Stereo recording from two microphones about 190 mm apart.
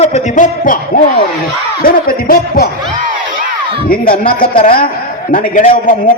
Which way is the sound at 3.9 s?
50° left (ahead or behind).